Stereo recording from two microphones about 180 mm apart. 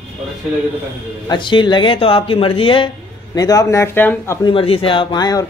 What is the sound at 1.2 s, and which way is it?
Speech, 25° left (ahead or behind).